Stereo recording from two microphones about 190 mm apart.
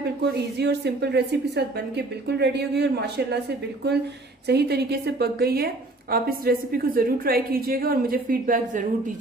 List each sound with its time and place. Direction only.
0.0 s a woman's voice: 60° right (ahead or behind)